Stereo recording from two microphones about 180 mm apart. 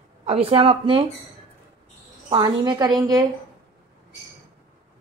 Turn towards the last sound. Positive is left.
turn(degrees=-20)  # may be behind; listen again after turning